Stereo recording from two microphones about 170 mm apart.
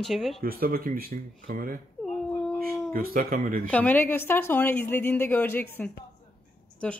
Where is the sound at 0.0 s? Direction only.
Centre (ahead or behind).